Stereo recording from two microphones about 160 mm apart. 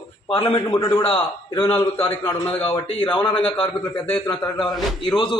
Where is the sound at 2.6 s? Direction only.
35° left (ahead or behind).